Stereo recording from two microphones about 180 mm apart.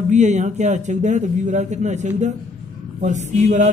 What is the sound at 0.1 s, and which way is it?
A man's voice, 40° right (ahead or behind).